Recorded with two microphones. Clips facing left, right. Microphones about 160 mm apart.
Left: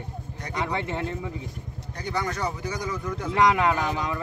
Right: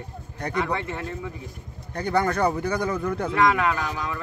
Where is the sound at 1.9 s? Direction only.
55° right (ahead or behind).